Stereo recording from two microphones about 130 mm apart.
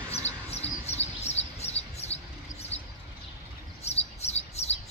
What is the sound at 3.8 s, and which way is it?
Chirp, 55° left (ahead or behind).